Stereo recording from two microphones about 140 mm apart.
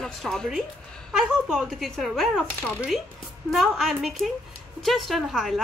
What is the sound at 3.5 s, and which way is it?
Speech, centre (ahead or behind).